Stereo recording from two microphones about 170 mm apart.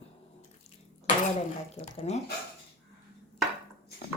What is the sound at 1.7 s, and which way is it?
Speech, 40° left (ahead or behind).